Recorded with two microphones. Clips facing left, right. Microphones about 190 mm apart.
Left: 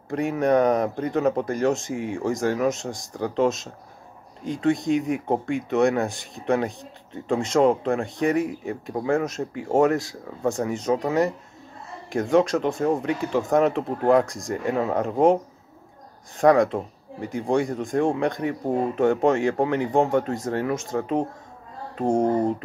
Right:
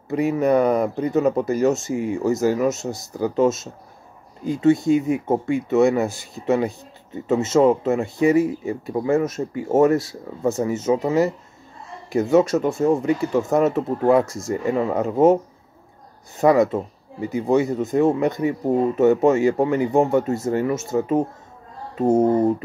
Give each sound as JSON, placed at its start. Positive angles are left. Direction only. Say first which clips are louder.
{"t": 0.1, "sound": "speech", "louder": "right 3 dB", "side_deg": -5}
{"t": 16.3, "sound": "speech", "louder": "right 1 dB", "side_deg": -5}
{"t": 21.9, "sound": "a sound", "louder": "right 4 dB", "side_deg": -5}